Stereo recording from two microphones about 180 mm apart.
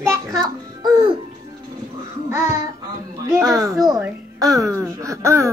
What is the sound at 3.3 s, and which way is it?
A child's voice, 20° right (ahead or behind).